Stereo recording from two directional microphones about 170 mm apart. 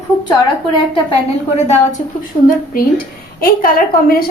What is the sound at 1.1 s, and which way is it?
Speech, 35° left (ahead or behind).